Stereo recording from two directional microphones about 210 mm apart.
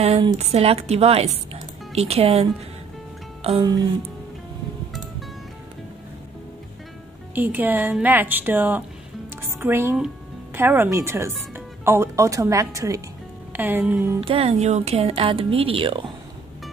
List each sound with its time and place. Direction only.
0.0 s a woman's voice: 30° right (ahead or behind)
3.4 s a woman's voice: 25° right (ahead or behind)
7.3 s a woman's voice: 10° right (ahead or behind)
14.2 s a woman's voice: 25° right (ahead or behind)